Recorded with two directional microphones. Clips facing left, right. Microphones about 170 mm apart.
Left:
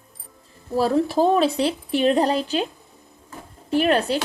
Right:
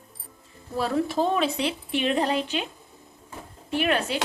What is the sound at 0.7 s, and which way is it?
Speech, 35° left (ahead or behind).